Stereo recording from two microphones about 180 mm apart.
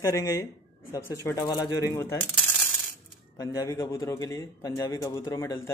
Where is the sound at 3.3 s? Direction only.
20° left (ahead or behind).